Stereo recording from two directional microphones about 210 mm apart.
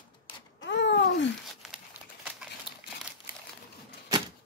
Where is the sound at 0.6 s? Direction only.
60° left (ahead or behind).